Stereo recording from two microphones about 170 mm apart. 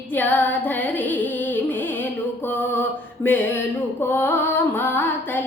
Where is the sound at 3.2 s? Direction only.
10° left (ahead or behind).